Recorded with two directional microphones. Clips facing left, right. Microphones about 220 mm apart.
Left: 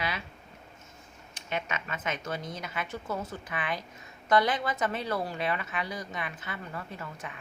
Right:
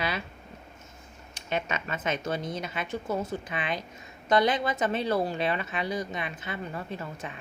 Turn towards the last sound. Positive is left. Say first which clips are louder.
# right 4 dB
turn(degrees=-25)  # may be behind; listen again after turning